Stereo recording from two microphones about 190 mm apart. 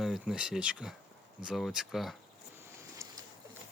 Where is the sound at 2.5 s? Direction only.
15° right (ahead or behind).